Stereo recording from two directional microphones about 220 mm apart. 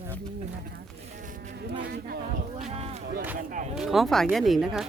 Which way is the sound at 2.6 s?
30° right (ahead or behind).